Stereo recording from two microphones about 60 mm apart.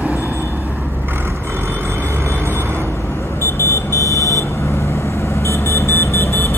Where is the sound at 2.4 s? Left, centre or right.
Right.